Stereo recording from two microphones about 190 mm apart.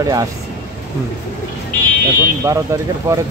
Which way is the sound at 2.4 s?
15° right (ahead or behind).